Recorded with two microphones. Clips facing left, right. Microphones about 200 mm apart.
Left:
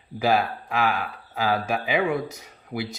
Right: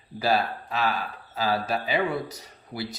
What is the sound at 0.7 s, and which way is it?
Speech, 10° left (ahead or behind).